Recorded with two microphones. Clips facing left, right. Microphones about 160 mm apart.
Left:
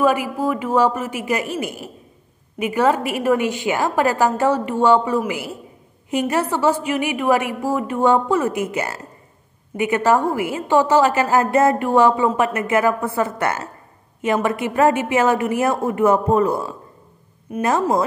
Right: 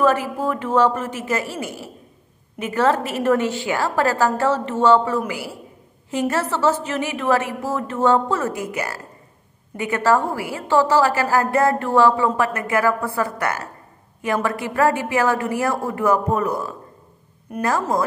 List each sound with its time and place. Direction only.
0.0 s a woman's voice: 10° left (ahead or behind)